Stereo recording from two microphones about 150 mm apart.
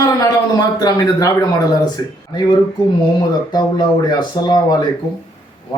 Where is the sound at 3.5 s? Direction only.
30° left (ahead or behind).